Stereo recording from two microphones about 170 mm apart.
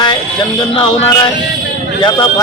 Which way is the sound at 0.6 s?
25° left (ahead or behind).